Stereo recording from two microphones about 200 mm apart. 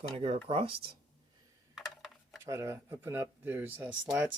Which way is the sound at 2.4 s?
15° right (ahead or behind).